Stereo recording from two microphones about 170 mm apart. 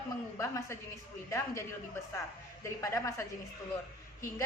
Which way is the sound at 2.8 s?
20° left (ahead or behind).